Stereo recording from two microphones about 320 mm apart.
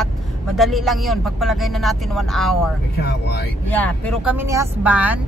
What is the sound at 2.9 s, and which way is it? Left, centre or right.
Speech, left.